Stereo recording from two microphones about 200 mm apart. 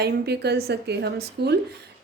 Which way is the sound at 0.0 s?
55° right (ahead or behind).